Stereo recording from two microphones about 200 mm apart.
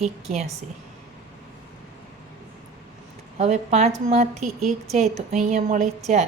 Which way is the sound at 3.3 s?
35° right (ahead or behind).